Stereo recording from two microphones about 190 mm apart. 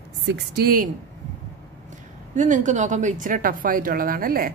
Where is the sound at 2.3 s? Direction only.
40° right (ahead or behind).